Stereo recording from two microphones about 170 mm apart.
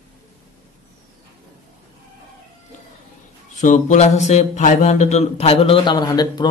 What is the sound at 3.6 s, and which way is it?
Speech, 45° left (ahead or behind).